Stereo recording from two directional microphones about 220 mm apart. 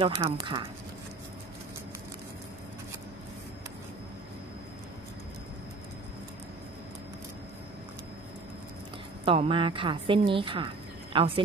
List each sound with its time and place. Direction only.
0.0 s a woman's voice: 15° right (ahead or behind)
9.2 s a woman's voice: 25° right (ahead or behind)